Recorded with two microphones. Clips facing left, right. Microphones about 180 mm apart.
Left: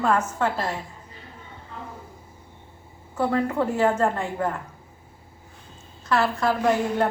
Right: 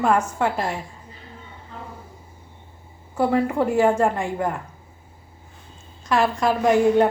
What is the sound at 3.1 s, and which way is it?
A woman's voice, 10° right (ahead or behind).